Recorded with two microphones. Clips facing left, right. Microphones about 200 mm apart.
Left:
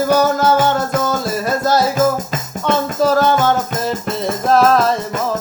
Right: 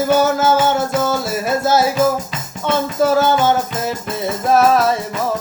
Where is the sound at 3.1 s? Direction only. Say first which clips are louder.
Even; 5° right (ahead or behind).